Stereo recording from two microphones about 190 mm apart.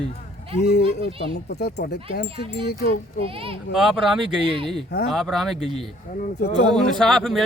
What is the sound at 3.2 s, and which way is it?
Speech, 30° right (ahead or behind).